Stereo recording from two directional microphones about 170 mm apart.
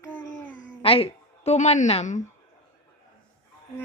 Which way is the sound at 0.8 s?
35° left (ahead or behind).